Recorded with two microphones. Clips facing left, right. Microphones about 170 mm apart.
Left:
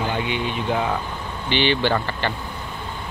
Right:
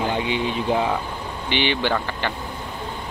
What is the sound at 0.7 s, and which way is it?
Speech, 10° right (ahead or behind).